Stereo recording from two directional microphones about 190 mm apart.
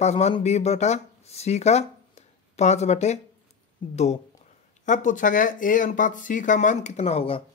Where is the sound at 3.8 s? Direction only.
25° left (ahead or behind).